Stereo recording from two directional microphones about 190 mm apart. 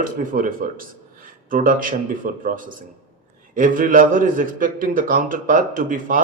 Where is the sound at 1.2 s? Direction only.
45° right (ahead or behind).